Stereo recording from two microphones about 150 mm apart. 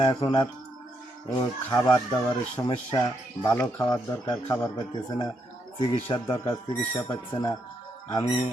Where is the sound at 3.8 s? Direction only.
25° left (ahead or behind).